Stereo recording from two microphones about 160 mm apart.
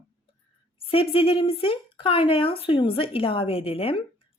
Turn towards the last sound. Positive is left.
turn(degrees=35)  # may be behind; listen again after turning